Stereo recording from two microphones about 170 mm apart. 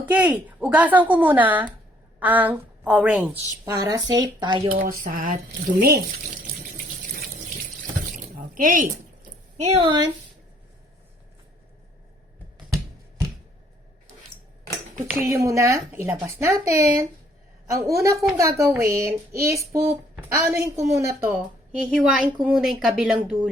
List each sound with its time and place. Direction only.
0.1 s a woman's voice: 10° right (ahead or behind)
3.7 s speech: 20° right (ahead or behind)
4.7 s speech: 55° right (ahead or behind); by 6.1 s 70° right (ahead or behind)
6.6 s water tap: 55° right (ahead or behind)
8.1 s a sound: 55° right (ahead or behind)
9.6 s a woman's voice: 35° right (ahead or behind)
14.9 s speech: 15° right (ahead or behind)
21.7 s speech: 5° right (ahead or behind)